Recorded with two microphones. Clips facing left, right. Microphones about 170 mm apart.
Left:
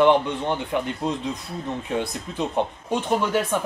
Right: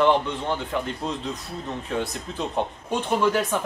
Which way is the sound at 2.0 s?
15° left (ahead or behind).